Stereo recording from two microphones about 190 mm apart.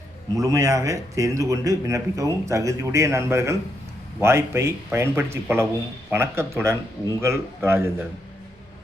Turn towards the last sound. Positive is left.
turn(degrees=-15)  # may be behind; listen again after turning